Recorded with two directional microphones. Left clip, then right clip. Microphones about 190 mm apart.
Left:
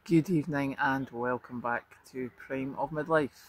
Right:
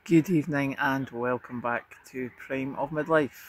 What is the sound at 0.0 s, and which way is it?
Speech, 15° right (ahead or behind).